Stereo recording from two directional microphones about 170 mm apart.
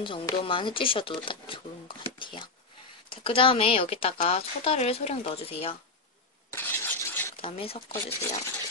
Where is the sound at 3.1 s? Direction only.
30° left (ahead or behind).